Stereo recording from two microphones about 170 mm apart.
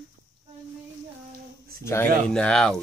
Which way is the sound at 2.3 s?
5° left (ahead or behind).